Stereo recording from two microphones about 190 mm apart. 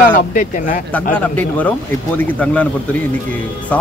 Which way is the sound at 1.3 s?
10° left (ahead or behind).